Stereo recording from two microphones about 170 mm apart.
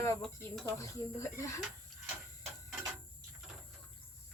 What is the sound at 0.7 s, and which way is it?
Speech, 20° left (ahead or behind).